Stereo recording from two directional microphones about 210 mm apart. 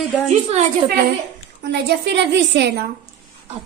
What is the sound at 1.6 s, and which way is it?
A woman's voice, 55° right (ahead or behind).